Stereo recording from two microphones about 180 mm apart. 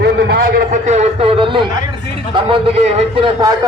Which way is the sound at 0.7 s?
40° right (ahead or behind).